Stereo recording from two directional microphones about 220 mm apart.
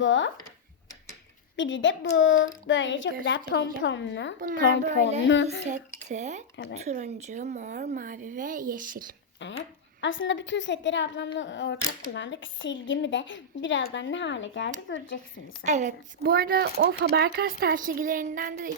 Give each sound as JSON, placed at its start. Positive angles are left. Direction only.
{"t": 0.0, "sound": "speech", "side_deg": 55}
{"t": 1.5, "sound": "speech", "side_deg": 55}
{"t": 4.4, "sound": "speech", "side_deg": -40}
{"t": 5.2, "sound": "speech", "side_deg": 60}
{"t": 6.1, "sound": "speech", "side_deg": -30}
{"t": 9.4, "sound": "speech", "side_deg": 55}
{"t": 15.6, "sound": "speech", "side_deg": -35}